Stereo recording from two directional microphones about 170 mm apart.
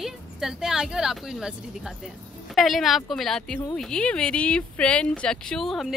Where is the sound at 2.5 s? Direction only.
Centre (ahead or behind).